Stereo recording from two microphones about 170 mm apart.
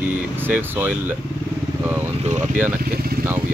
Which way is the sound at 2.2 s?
40° right (ahead or behind).